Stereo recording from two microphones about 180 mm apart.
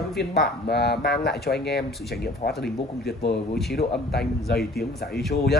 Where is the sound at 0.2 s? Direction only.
65° left (ahead or behind).